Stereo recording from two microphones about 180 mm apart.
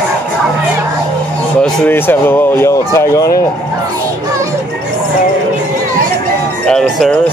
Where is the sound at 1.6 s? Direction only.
10° left (ahead or behind).